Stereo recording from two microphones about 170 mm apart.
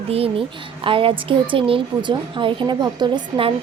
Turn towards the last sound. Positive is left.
turn(degrees=-30)  # may be behind; listen again after turning